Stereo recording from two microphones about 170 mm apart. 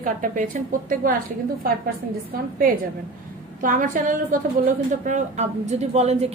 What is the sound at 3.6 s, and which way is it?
A woman's voice, 50° right (ahead or behind).